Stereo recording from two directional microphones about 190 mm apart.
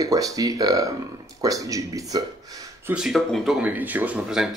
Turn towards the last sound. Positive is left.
turn(degrees=-5)  # may be behind; listen again after turning